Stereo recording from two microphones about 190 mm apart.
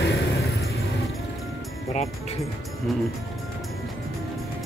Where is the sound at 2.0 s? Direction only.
35° left (ahead or behind).